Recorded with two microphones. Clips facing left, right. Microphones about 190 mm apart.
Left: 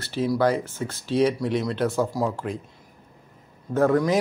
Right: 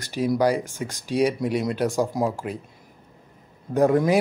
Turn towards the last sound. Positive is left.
turn(degrees=-15)  # may be behind; listen again after turning